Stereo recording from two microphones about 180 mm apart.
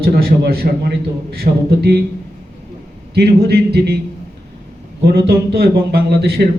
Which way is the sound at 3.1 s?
65° right (ahead or behind).